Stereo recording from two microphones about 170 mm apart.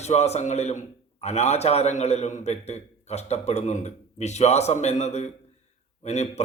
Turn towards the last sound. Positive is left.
turn(degrees=40)  # may be behind; listen again after turning